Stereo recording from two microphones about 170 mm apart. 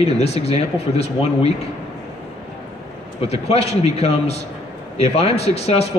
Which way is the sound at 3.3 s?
35° left (ahead or behind).